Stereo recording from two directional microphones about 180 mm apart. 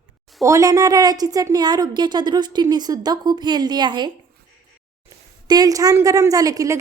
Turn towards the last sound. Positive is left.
turn(degrees=-20)  # may be behind; listen again after turning